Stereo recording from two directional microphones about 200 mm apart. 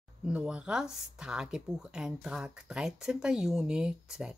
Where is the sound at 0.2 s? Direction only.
5° right (ahead or behind).